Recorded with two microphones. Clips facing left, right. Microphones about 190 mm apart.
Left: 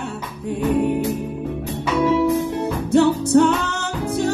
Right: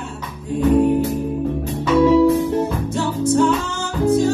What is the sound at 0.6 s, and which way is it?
Music, 70° left (ahead or behind).